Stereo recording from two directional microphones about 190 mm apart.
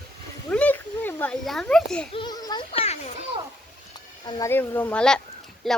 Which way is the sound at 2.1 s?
20° left (ahead or behind).